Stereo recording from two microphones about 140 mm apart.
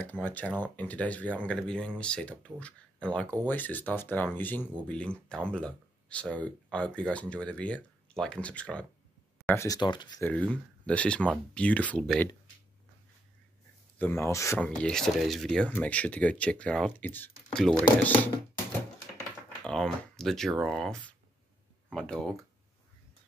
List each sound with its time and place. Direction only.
0.0 s speech: 10° left (ahead or behind)
9.5 s speech: 20° left (ahead or behind)
9.8 s speech: 35° left (ahead or behind)
10.2 s speech: 10° left (ahead or behind)
13.9 s speech: 15° left (ahead or behind)
14.6 s speech: 5° left (ahead or behind)
19.6 s speech: 5° left (ahead or behind)